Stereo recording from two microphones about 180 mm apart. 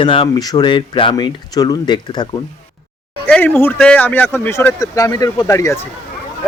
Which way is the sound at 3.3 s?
10° left (ahead or behind).